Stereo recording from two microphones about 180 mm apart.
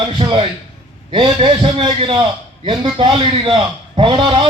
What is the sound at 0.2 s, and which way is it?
A man's voice, 30° right (ahead or behind).